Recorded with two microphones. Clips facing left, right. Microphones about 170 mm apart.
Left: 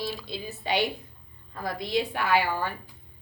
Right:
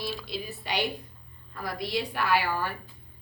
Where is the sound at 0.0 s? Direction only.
25° left (ahead or behind).